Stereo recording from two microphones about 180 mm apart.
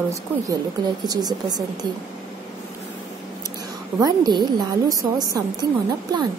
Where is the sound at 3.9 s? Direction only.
20° right (ahead or behind).